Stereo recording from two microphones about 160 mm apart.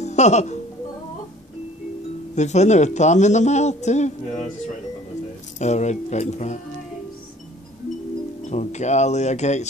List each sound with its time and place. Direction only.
0.0 s speech: 45° left (ahead or behind)
2.3 s a man's voice: 45° left (ahead or behind)
5.6 s a man's voice: 45° left (ahead or behind)
8.5 s a man's voice: 45° left (ahead or behind)